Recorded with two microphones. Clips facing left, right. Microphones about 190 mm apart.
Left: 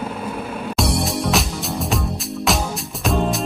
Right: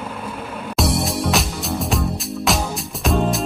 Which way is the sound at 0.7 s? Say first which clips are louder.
Right 1 dB; centre (ahead or behind).